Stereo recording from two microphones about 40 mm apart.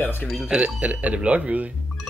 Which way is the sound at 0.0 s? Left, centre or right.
Left.